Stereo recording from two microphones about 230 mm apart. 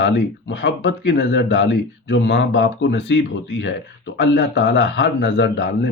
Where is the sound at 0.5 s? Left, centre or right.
Left.